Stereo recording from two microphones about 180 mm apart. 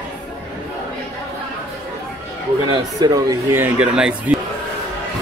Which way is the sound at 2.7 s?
20° right (ahead or behind).